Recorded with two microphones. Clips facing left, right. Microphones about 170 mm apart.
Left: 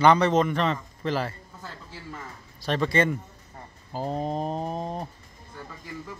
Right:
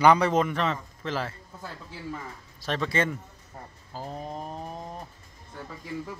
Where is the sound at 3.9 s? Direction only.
25° left (ahead or behind).